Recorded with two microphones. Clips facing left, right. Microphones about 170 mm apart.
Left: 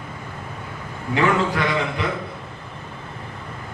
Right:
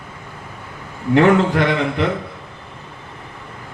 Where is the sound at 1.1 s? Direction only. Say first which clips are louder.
Right 7 dB; 60° right (ahead or behind).